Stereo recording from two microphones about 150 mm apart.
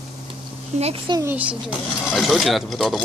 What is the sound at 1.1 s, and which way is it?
Speech, 30° right (ahead or behind).